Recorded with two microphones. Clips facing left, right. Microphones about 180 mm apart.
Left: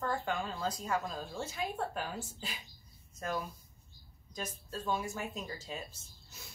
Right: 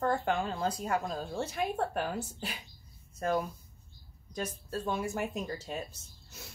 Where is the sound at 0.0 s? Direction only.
55° right (ahead or behind).